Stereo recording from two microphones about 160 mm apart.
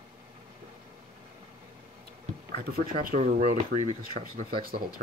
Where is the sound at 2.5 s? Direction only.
65° right (ahead or behind).